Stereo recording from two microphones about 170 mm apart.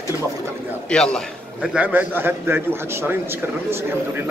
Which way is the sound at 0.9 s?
5° left (ahead or behind).